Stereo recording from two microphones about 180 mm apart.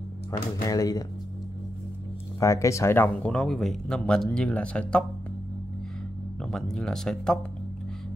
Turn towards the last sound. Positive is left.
turn(degrees=5)  # may be behind; listen again after turning